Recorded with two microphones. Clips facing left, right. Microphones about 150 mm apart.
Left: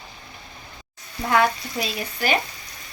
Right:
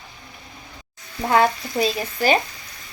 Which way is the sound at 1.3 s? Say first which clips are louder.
Right 2 dB; 30° right (ahead or behind).